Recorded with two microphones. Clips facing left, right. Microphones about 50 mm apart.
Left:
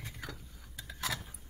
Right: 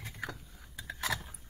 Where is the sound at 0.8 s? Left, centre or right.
Right.